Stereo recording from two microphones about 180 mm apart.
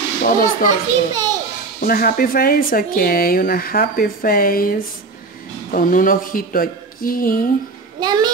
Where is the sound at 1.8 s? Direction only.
55° left (ahead or behind).